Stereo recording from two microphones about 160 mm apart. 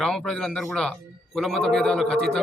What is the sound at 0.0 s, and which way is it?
A man's voice, 5° left (ahead or behind).